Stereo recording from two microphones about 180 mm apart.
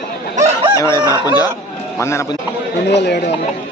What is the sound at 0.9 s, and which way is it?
Chicken, 20° right (ahead or behind).